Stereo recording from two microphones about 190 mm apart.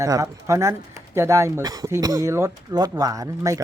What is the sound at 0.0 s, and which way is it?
Speech, 15° right (ahead or behind).